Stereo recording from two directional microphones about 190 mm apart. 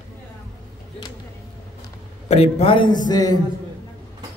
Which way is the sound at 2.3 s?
35° left (ahead or behind).